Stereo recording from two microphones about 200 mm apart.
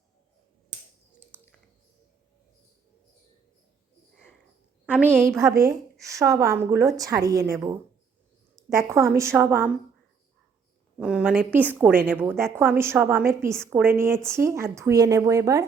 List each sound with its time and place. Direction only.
5.1 s a woman's voice: 10° right (ahead or behind)
8.9 s a woman's voice: 15° right (ahead or behind)
11.0 s a woman's voice: 5° right (ahead or behind)